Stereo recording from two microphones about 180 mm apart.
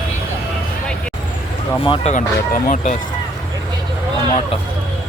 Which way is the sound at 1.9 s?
40° left (ahead or behind).